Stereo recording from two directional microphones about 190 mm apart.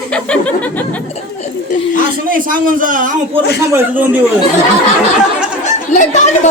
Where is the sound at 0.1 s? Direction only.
5° left (ahead or behind).